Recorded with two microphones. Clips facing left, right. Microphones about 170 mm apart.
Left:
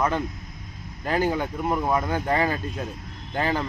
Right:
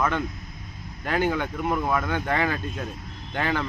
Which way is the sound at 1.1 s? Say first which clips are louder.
Left 1 dB; 35° left (ahead or behind).